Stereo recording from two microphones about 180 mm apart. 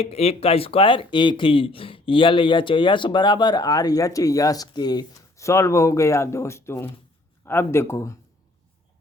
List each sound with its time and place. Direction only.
0.0 s speech: 35° left (ahead or behind); by 8.1 s 15° left (ahead or behind)